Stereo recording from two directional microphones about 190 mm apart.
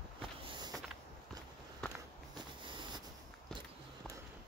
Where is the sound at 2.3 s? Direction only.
25° right (ahead or behind).